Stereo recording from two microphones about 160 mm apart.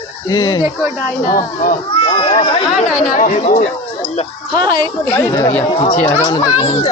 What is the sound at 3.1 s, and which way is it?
Speech, 55° left (ahead or behind).